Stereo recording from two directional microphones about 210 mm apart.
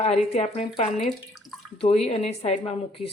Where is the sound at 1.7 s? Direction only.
30° left (ahead or behind).